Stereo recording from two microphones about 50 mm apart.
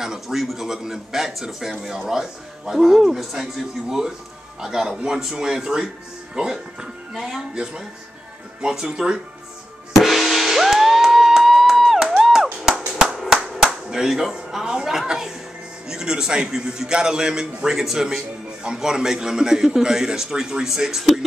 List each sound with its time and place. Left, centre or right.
0.0 s a man's voice: centre
4.6 s a man's voice: centre
7.2 s a man's voice: centre
7.5 s a man's voice: centre
8.9 s a man's voice: centre
9.9 s music: centre
12.9 s clapping: centre
13.8 s speech: centre
15.0 s a sound: centre
15.9 s a man's voice: centre